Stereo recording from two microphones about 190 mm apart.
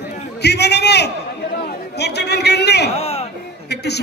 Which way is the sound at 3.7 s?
60° left (ahead or behind).